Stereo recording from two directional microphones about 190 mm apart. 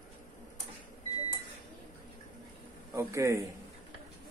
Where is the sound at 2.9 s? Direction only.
15° right (ahead or behind).